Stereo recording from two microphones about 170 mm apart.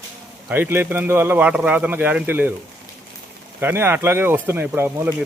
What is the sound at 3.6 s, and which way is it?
Speech, 15° right (ahead or behind).